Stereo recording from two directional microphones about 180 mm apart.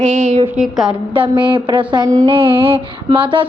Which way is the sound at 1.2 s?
25° right (ahead or behind).